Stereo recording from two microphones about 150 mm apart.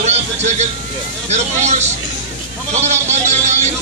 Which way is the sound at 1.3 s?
50° right (ahead or behind).